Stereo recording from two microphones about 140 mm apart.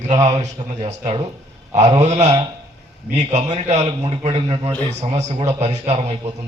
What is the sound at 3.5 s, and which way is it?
A man's voice, 50° right (ahead or behind).